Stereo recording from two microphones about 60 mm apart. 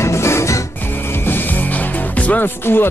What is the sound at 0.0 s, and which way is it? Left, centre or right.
Music, left.